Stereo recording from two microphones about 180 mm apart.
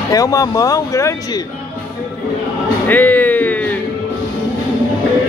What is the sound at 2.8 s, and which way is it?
Music, 10° left (ahead or behind).